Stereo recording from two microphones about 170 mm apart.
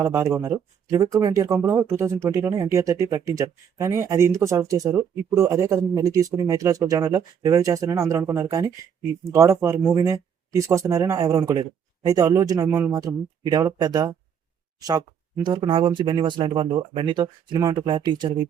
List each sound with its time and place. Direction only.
0.0 s speech: 20° right (ahead or behind)